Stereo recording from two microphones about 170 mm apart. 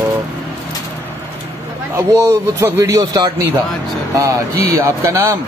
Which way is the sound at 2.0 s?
20° right (ahead or behind).